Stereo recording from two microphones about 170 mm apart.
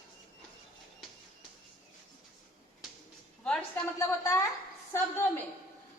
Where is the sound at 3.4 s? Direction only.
5° left (ahead or behind).